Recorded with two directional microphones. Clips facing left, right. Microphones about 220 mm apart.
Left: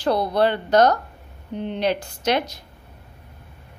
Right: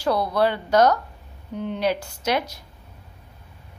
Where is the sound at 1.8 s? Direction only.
5° right (ahead or behind).